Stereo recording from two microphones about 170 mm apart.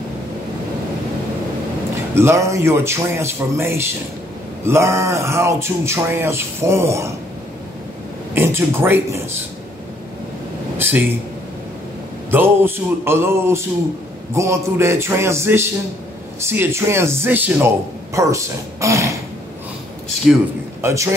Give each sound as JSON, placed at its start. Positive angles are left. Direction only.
{"t": 2.1, "sound": "speech", "side_deg": -15}
{"t": 8.4, "sound": "speech", "side_deg": -15}
{"t": 10.8, "sound": "speech", "side_deg": -10}
{"t": 12.3, "sound": "speech", "side_deg": -15}
{"t": 20.8, "sound": "speech", "side_deg": -15}